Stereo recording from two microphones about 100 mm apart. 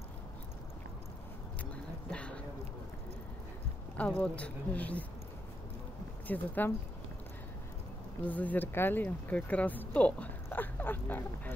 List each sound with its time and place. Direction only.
2.0 s speech: 10° left (ahead or behind)
3.9 s speech: 15° left (ahead or behind)
6.2 s speech: 20° left (ahead or behind)
8.2 s speech: 15° left (ahead or behind)